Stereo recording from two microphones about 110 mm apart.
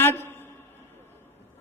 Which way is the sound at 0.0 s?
20° left (ahead or behind).